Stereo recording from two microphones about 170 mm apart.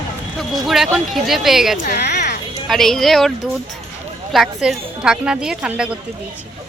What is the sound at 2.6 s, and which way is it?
A woman's voice, centre (ahead or behind).